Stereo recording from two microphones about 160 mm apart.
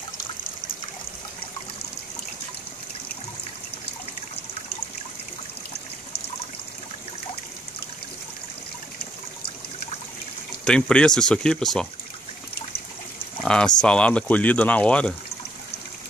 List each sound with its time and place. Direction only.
10.6 s speech: 5° left (ahead or behind)
13.4 s a sound: 5° left (ahead or behind)
13.7 s speech: 5° left (ahead or behind)